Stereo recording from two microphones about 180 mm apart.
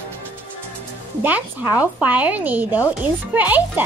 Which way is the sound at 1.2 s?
10° right (ahead or behind).